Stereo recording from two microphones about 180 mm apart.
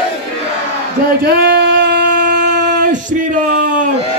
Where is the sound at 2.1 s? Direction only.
45° right (ahead or behind).